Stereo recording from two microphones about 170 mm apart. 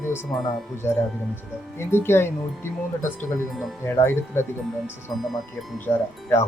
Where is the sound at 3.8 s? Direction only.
15° left (ahead or behind).